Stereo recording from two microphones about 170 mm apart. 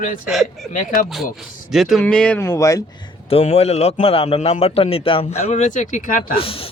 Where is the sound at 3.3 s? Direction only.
35° left (ahead or behind); by 6.4 s 50° left (ahead or behind).